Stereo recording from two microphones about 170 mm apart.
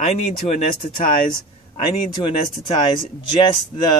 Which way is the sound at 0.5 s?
30° left (ahead or behind).